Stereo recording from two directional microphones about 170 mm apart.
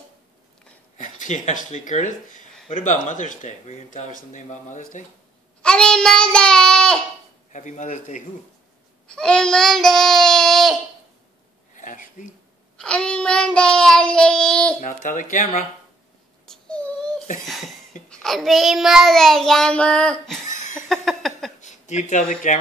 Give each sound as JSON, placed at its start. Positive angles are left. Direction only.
{"t": 0.9, "sound": "speech", "side_deg": 45}
{"t": 5.6, "sound": "child singing", "side_deg": 5}
{"t": 7.5, "sound": "speech", "side_deg": 45}
{"t": 9.0, "sound": "child singing", "side_deg": 5}
{"t": 11.7, "sound": "a sound", "side_deg": 50}
{"t": 12.7, "sound": "child singing", "side_deg": 5}
{"t": 14.8, "sound": "speech", "side_deg": 50}
{"t": 16.4, "sound": "baby cry", "side_deg": 5}
{"t": 18.2, "sound": "child singing", "side_deg": 0}
{"t": 20.9, "sound": "a sound", "side_deg": 0}
{"t": 21.5, "sound": "speech", "side_deg": 45}